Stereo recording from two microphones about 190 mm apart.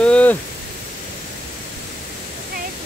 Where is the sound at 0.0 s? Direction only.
5° left (ahead or behind).